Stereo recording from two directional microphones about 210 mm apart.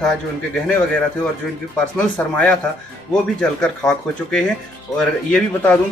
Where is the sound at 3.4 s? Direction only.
5° left (ahead or behind).